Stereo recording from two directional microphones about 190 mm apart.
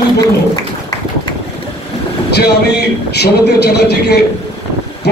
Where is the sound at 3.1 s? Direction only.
60° left (ahead or behind).